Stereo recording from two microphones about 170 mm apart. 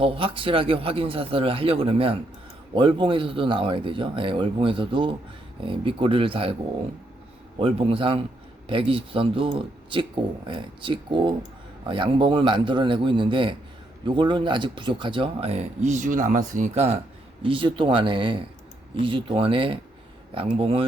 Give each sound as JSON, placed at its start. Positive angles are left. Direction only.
{"t": 0.0, "sound": "speech", "side_deg": -30}
{"t": 7.6, "sound": "speech", "side_deg": -35}
{"t": 17.4, "sound": "speech", "side_deg": -30}